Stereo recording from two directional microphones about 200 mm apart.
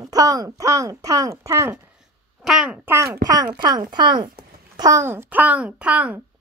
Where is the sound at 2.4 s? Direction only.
5° right (ahead or behind).